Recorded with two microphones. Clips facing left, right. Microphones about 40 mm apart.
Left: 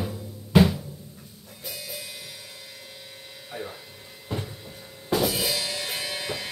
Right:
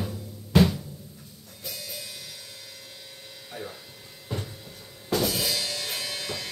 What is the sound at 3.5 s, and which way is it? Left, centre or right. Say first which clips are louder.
Music: left 2 dB; centre.